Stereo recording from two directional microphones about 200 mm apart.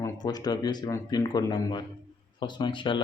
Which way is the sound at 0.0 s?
20° left (ahead or behind).